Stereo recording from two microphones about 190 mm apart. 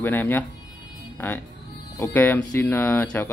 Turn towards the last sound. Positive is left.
turn(degrees=10)  # may be behind; listen again after turning